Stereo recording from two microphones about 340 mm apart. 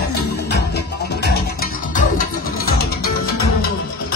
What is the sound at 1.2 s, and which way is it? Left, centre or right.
Music, left.